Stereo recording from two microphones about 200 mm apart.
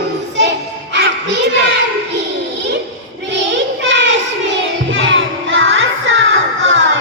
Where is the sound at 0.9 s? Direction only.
60° right (ahead or behind).